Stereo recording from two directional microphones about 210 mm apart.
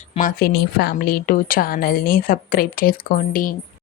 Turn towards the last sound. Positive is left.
turn(degrees=40)  # may be behind; listen again after turning